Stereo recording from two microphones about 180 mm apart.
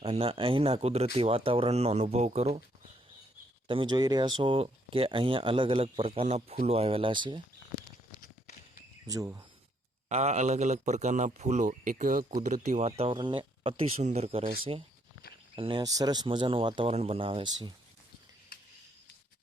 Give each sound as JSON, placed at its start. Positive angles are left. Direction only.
{"t": 0.0, "sound": "speech", "side_deg": -30}
{"t": 3.7, "sound": "speech", "side_deg": -25}
{"t": 8.2, "sound": "a sound", "side_deg": 45}
{"t": 9.0, "sound": "speech", "side_deg": -20}
{"t": 10.1, "sound": "speech", "side_deg": -40}
{"t": 15.5, "sound": "speech", "side_deg": -25}